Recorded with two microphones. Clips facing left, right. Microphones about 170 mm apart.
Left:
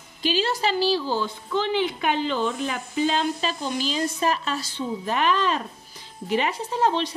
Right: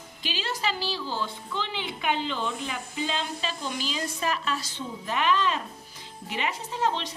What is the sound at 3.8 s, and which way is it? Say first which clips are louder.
A woman's voice: left 7 dB; 35° left (ahead or behind).